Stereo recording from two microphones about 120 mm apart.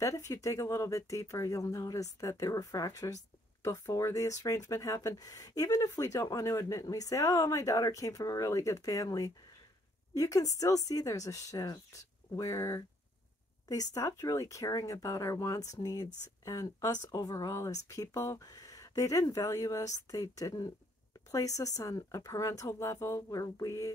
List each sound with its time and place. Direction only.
0.3 s speech: 25° left (ahead or behind)